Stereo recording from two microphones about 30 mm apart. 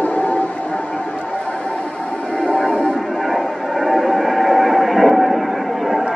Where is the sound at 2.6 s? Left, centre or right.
Left.